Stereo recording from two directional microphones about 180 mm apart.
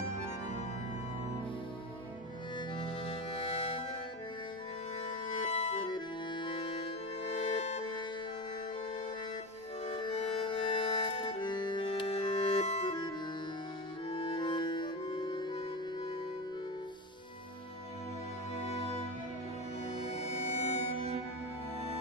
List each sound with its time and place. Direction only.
3.3 s music: 30° left (ahead or behind)
5.3 s accordion: 30° left (ahead or behind)
9.8 s music: 25° left (ahead or behind)
14.1 s music: 25° left (ahead or behind)
18.7 s music: 35° left (ahead or behind)
20.1 s music: 35° left (ahead or behind)